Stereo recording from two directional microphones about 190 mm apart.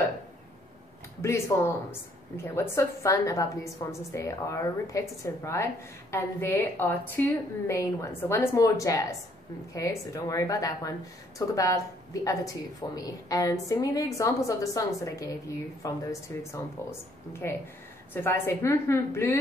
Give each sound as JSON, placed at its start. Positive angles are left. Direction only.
{"t": 1.2, "sound": "a woman's voice", "side_deg": 15}